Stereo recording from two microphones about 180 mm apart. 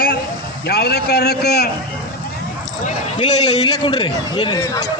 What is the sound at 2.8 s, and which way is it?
A man's voice, 40° left (ahead or behind).